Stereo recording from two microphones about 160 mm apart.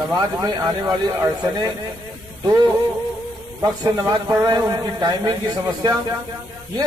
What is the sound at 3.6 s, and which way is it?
A man's voice, 25° right (ahead or behind).